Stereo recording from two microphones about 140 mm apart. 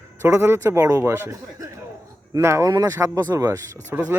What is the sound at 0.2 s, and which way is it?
A man's voice, 15° right (ahead or behind).